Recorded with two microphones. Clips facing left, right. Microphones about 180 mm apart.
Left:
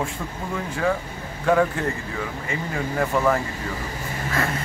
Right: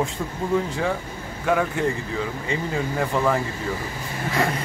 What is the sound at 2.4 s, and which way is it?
Speech, 20° right (ahead or behind).